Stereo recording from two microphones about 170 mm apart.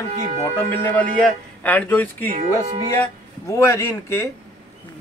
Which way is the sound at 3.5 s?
20° left (ahead or behind).